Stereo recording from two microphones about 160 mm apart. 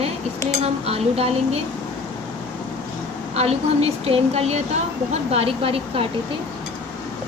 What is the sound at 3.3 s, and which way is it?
Speech, 40° right (ahead or behind).